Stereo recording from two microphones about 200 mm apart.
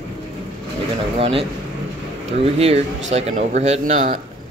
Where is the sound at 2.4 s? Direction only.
30° right (ahead or behind).